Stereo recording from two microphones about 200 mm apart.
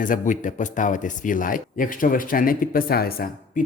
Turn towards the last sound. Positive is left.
turn(degrees=45)  # may be behind; listen again after turning